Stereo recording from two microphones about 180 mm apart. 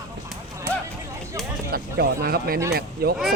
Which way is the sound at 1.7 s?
60° right (ahead or behind).